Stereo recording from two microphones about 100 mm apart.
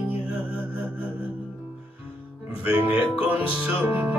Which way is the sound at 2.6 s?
15° right (ahead or behind).